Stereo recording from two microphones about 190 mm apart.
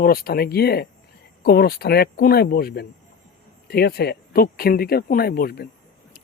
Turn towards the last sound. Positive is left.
turn(degrees=55)  # may be behind; listen again after turning